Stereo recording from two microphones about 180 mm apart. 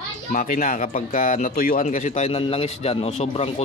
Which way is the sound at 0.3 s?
45° left (ahead or behind).